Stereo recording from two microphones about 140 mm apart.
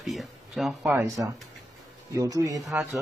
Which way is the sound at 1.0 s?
25° right (ahead or behind).